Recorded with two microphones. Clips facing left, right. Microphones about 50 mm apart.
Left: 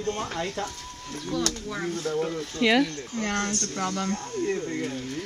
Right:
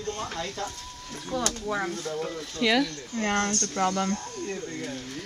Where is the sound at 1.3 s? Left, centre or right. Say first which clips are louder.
Left 1 dB; right.